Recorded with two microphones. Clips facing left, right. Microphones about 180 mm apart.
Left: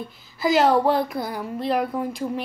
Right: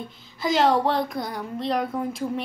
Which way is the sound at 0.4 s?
Centre (ahead or behind).